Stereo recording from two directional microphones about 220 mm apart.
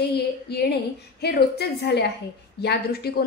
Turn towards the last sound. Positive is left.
turn(degrees=45)  # may be behind; listen again after turning